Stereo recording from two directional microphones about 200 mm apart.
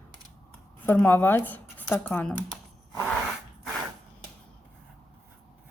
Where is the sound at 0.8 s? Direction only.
10° left (ahead or behind).